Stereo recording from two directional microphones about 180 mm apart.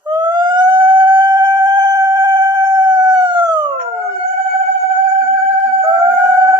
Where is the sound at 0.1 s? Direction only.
25° right (ahead or behind).